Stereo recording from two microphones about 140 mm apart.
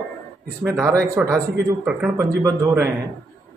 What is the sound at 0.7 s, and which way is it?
A man's voice, 20° right (ahead or behind).